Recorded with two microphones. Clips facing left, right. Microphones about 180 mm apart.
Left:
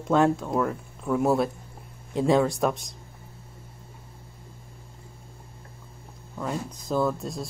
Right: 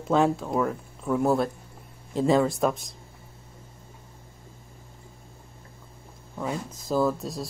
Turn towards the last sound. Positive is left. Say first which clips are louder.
# right 1 dB
turn(degrees=0)  # may be behind; listen again after turning